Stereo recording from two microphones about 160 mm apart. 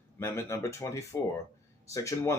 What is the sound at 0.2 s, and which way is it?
Speech, 15° left (ahead or behind).